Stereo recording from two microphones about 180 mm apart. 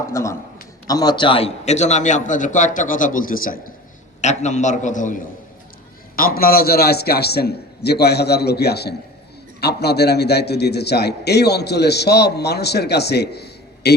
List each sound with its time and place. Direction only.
0.1 s a man's voice: 15° left (ahead or behind); by 3.6 s 50° left (ahead or behind)
4.2 s a man's voice: 40° left (ahead or behind); by 13.9 s 65° left (ahead or behind)